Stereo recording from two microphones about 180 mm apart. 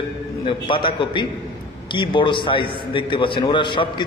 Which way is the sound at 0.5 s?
30° left (ahead or behind).